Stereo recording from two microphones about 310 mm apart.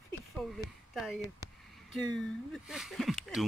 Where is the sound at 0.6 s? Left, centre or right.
Centre.